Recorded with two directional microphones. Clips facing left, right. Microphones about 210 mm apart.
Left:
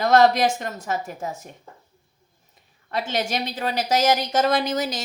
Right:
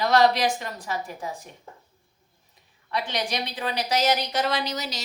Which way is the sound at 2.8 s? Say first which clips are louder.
Left 3 dB; 45° left (ahead or behind).